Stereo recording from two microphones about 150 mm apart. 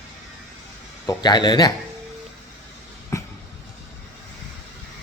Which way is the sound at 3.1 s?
20° left (ahead or behind).